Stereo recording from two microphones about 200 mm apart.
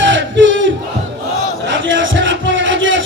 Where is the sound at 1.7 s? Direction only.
70° right (ahead or behind).